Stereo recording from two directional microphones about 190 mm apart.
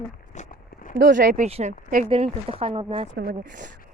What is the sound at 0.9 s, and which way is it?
Speech, 50° right (ahead or behind).